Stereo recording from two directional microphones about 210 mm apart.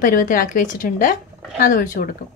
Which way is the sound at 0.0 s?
40° left (ahead or behind).